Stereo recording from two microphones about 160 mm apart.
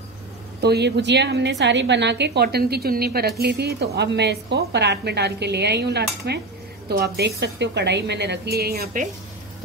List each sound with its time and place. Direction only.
0.6 s a woman's voice: 90° right; by 9.1 s 65° right (ahead or behind)